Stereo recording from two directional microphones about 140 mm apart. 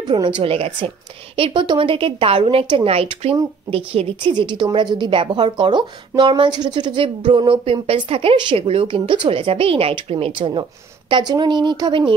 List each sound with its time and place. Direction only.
0.1 s speech: 35° right (ahead or behind)